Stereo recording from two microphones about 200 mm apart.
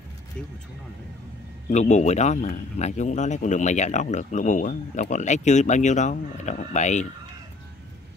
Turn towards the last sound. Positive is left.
turn(degrees=35)  # may be behind; listen again after turning